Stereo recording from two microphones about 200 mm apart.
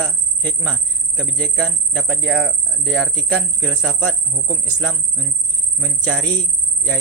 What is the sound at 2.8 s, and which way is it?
Speech, centre (ahead or behind).